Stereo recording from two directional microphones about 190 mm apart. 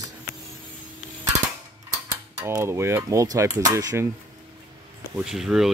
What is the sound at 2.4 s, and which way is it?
Cutlery, 15° right (ahead or behind).